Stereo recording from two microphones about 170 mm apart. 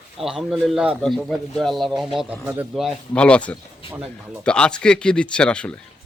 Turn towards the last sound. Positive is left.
turn(degrees=5)  # may be behind; listen again after turning